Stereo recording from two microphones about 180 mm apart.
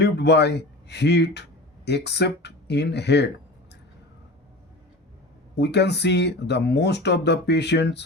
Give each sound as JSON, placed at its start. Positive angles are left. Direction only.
{"t": 0.0, "sound": "speech", "side_deg": 70}
{"t": 5.5, "sound": "speech", "side_deg": 70}